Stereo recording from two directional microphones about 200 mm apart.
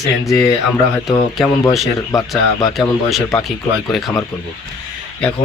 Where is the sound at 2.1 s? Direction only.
15° left (ahead or behind).